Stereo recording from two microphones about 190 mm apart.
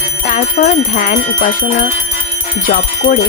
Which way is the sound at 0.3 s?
40° left (ahead or behind).